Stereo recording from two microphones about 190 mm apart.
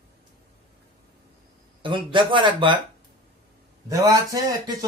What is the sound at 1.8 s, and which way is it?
Speech, 25° right (ahead or behind).